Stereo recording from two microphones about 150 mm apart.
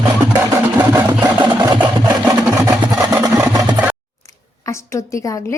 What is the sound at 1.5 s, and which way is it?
Engine, 30° right (ahead or behind).